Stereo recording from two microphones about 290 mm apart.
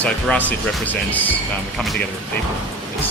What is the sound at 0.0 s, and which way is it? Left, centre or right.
Speech, centre.